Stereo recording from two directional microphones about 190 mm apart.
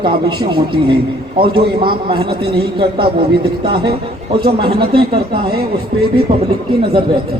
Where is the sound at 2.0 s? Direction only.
30° right (ahead or behind).